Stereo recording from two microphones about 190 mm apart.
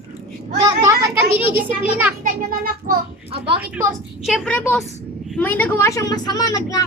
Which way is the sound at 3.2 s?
30° right (ahead or behind).